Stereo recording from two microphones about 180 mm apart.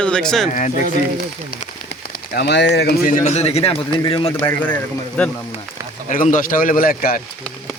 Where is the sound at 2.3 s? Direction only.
70° left (ahead or behind).